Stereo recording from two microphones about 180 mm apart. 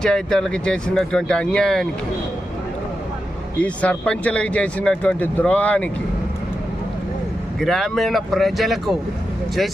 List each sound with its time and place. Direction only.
0.0 s speech: 5° left (ahead or behind)
3.6 s speech: 5° left (ahead or behind)
7.6 s speech: centre (ahead or behind)